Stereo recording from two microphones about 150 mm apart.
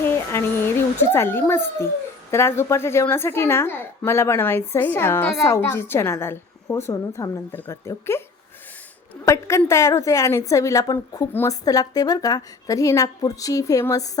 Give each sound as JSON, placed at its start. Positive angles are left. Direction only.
{"t": 0.0, "sound": "a sound", "side_deg": 15}
{"t": 1.1, "sound": "a woman's voice", "side_deg": 15}
{"t": 9.2, "sound": "a woman's voice", "side_deg": 20}
{"t": 11.3, "sound": "a woman's voice", "side_deg": 15}
{"t": 11.6, "sound": "a woman's voice", "side_deg": 25}